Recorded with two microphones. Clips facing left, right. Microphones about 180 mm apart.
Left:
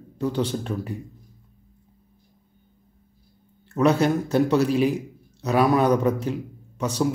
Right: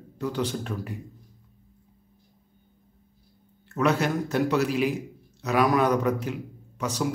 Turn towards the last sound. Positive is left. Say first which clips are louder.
# left 4 dB
turn(degrees=30)  # may be behind; listen again after turning